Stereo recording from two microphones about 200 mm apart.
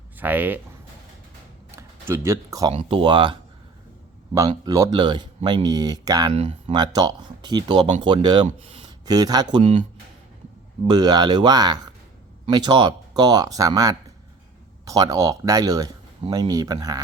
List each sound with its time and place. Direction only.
0.2 s speech: 10° right (ahead or behind)
1.7 s speech: 10° right (ahead or behind)
4.4 s speech: 15° right (ahead or behind)
6.3 s speech: 30° right (ahead or behind)
10.8 s speech: 20° right (ahead or behind)